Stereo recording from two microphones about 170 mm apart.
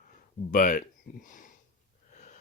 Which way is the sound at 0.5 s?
55° left (ahead or behind).